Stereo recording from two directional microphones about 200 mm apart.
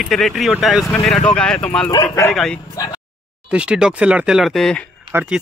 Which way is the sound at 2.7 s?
20° left (ahead or behind).